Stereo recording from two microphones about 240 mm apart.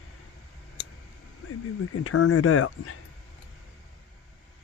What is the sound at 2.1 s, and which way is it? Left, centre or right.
Speech, left.